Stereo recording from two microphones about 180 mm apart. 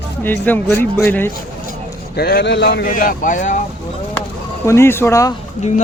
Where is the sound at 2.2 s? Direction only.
60° left (ahead or behind).